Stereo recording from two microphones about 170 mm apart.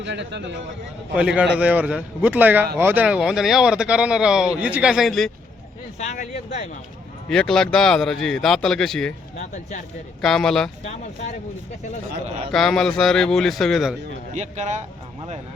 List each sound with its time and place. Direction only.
0.0 s speech: 90° right
1.1 s a man's voice: 5° right (ahead or behind)
6.0 s speech: 40° left (ahead or behind)
7.3 s speech: 5° left (ahead or behind)
10.2 s speech: 5° left (ahead or behind)
10.8 s speech: 40° left (ahead or behind)
12.5 s speech: 5° left (ahead or behind)
14.3 s speech: 45° right (ahead or behind)